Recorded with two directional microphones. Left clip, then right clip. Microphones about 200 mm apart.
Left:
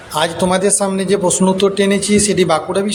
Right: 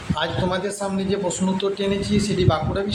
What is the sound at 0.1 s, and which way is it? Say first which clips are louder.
A man's voice: left 8 dB; 30° left (ahead or behind).